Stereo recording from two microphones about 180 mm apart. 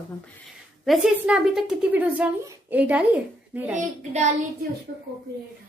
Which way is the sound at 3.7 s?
40° right (ahead or behind).